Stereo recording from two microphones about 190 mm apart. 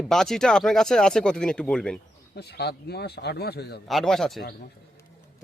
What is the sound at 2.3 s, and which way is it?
A man's voice, 60° left (ahead or behind).